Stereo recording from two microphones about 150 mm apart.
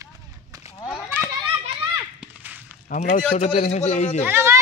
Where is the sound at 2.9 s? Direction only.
60° left (ahead or behind).